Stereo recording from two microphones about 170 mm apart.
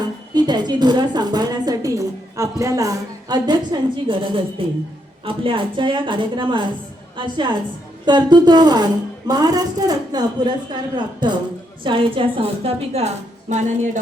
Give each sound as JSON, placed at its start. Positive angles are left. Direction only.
{"t": 0.3, "sound": "a woman's voice", "side_deg": -25}